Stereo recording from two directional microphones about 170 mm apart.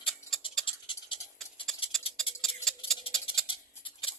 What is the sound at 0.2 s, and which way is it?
Tick-tock, 15° left (ahead or behind).